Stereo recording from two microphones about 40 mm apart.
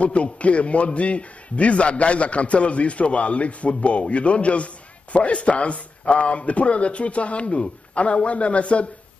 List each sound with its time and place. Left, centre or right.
0.0 s a man's voice: left